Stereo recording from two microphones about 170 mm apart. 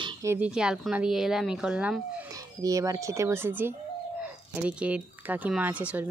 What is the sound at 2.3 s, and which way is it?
Speech, 20° right (ahead or behind).